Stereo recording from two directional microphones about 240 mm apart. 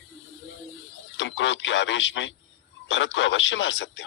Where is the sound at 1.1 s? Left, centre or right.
Left.